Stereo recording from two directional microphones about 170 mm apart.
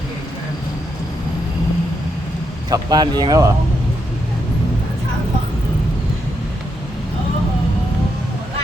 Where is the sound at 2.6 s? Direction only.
25° right (ahead or behind).